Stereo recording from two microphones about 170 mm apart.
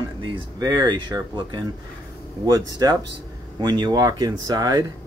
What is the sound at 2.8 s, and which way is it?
Speech, 20° right (ahead or behind).